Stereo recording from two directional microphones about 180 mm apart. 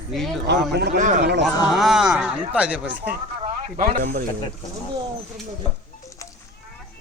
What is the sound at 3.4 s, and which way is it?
Speech, 50° right (ahead or behind).